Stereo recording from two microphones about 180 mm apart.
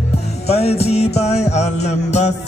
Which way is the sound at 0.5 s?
35° left (ahead or behind).